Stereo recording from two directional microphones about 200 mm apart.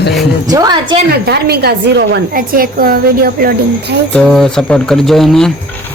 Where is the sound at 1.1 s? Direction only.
55° right (ahead or behind).